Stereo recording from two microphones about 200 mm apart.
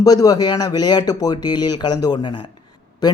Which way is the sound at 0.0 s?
20° left (ahead or behind).